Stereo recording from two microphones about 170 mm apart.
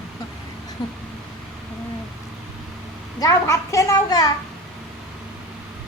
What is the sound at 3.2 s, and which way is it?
A child's voice, 20° left (ahead or behind).